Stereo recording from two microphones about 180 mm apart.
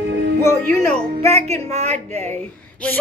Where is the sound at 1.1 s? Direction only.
35° right (ahead or behind).